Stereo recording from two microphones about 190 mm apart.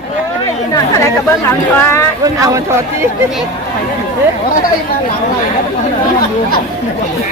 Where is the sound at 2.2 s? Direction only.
15° right (ahead or behind).